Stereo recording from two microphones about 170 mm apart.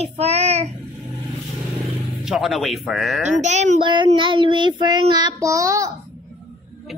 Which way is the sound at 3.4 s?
45° right (ahead or behind).